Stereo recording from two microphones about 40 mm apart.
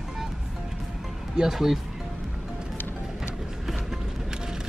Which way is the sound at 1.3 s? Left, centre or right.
Centre.